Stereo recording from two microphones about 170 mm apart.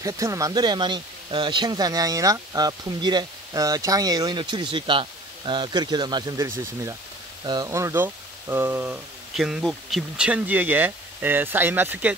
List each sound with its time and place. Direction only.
0.0 s speech: 20° right (ahead or behind)